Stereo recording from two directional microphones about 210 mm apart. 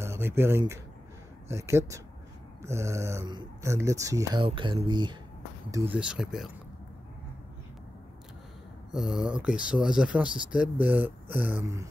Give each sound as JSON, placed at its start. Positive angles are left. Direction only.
{"t": 0.0, "sound": "speech", "side_deg": -10}
{"t": 5.7, "sound": "speech", "side_deg": -10}
{"t": 8.9, "sound": "speech", "side_deg": 0}